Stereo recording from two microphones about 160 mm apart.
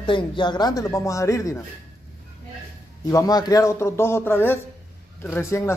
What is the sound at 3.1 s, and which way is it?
Speech, 25° left (ahead or behind).